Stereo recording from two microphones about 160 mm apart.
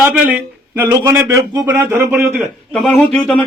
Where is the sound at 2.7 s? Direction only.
5° left (ahead or behind).